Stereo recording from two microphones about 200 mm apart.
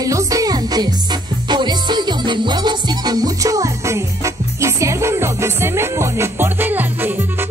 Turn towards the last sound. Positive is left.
turn(degrees=-10)  # may be behind; listen again after turning